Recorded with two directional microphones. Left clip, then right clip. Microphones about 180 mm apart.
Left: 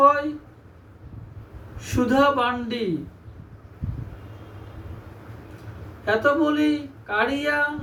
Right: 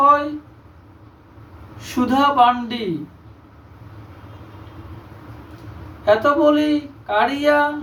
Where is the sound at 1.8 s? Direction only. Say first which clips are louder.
Right 2 dB; 5° right (ahead or behind).